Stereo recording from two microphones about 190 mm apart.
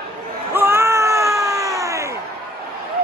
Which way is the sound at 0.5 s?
10° right (ahead or behind).